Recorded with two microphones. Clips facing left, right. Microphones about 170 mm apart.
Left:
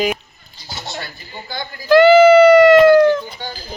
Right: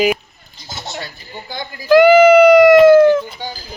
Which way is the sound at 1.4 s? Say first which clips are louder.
Right 1 dB; 10° right (ahead or behind).